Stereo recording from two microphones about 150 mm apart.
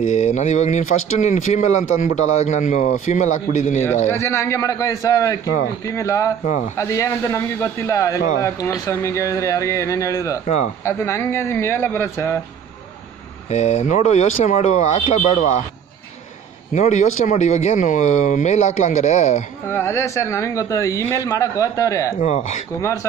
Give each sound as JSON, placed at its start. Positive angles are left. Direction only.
{"t": 0.0, "sound": "speech", "side_deg": 55}
{"t": 4.1, "sound": "a man's voice", "side_deg": 15}
{"t": 10.4, "sound": "speech", "side_deg": 50}
{"t": 10.8, "sound": "speech", "side_deg": 20}
{"t": 13.5, "sound": "speech", "side_deg": 50}
{"t": 16.7, "sound": "speech", "side_deg": 50}
{"t": 19.7, "sound": "a man's voice", "side_deg": 15}
{"t": 22.2, "sound": "speech", "side_deg": 50}